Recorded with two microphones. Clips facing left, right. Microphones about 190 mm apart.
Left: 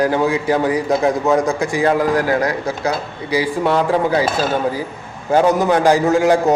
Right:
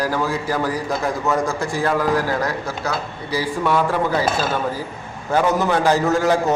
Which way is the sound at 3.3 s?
15° left (ahead or behind).